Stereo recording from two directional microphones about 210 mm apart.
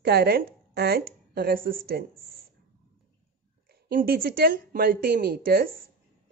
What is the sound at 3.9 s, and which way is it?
Speech, 45° right (ahead or behind).